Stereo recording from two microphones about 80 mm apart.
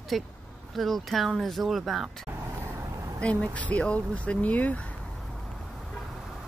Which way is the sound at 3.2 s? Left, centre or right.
Centre.